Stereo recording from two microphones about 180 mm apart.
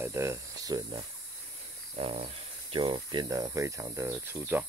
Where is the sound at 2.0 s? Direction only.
35° right (ahead or behind).